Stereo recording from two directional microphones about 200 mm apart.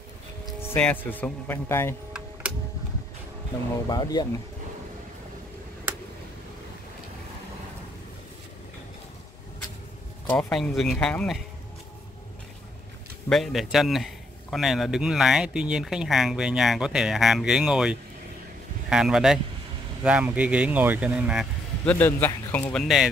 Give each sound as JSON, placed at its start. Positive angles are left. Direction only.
{"t": 0.6, "sound": "speech", "side_deg": 10}
{"t": 3.9, "sound": "speech", "side_deg": 20}
{"t": 10.2, "sound": "a man's voice", "side_deg": 5}
{"t": 13.3, "sound": "a man's voice", "side_deg": 0}
{"t": 21.8, "sound": "speech", "side_deg": 10}